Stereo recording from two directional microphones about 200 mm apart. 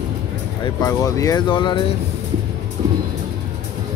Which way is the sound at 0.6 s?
20° left (ahead or behind).